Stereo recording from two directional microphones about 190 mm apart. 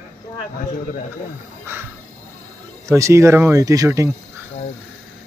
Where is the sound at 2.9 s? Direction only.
15° right (ahead or behind).